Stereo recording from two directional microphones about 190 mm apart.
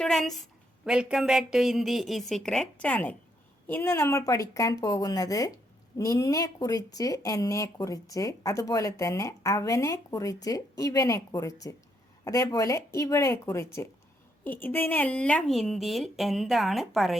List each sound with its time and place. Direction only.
0.0 s speech: centre (ahead or behind)